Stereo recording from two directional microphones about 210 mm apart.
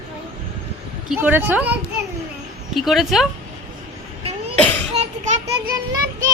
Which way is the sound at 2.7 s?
Centre (ahead or behind).